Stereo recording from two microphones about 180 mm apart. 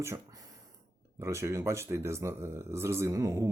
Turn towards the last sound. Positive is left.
turn(degrees=-15)  # may be behind; listen again after turning